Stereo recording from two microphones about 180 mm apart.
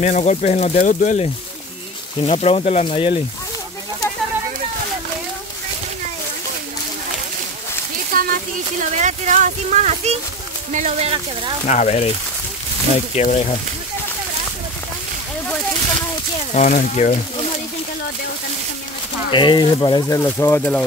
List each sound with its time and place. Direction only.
0.0 s speech: 40° left (ahead or behind)
8.1 s a sound: 55° right (ahead or behind)
8.9 s speech: 40° right (ahead or behind)
11.6 s speech: 40° left (ahead or behind)
13.1 s speech: 40° left (ahead or behind)
16.5 s speech: 45° left (ahead or behind)
19.3 s speech: 25° left (ahead or behind)
20.2 s speech: 10° left (ahead or behind)